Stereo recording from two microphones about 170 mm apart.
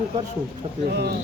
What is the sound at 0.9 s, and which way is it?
Speech, 80° right.